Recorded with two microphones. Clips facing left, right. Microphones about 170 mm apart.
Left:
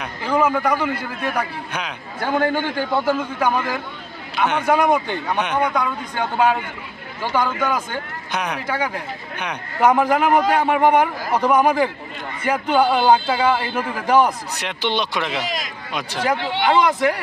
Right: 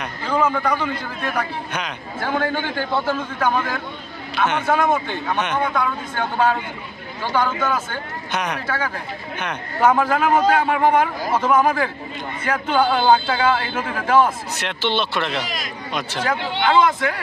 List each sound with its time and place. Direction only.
0.0 s a man's voice: 10° left (ahead or behind)
15.4 s speech: 20° left (ahead or behind)
15.9 s a man's voice: 10° left (ahead or behind)